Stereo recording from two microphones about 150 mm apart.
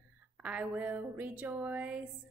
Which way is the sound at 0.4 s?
10° right (ahead or behind).